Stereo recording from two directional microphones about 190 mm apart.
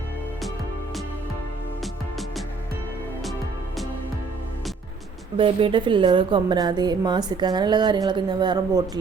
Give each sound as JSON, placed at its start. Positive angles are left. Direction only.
{"t": 1.8, "sound": "music", "side_deg": 0}
{"t": 5.4, "sound": "a woman's voice", "side_deg": -25}